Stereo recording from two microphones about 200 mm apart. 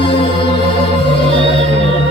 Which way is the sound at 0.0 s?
25° left (ahead or behind).